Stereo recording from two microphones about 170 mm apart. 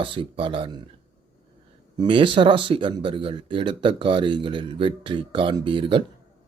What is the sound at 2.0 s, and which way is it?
Speech, 30° right (ahead or behind).